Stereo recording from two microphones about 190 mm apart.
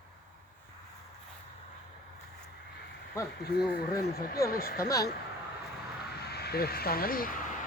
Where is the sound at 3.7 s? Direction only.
50° left (ahead or behind).